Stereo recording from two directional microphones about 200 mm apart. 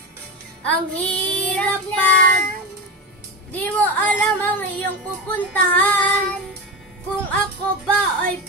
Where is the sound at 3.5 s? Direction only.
10° left (ahead or behind).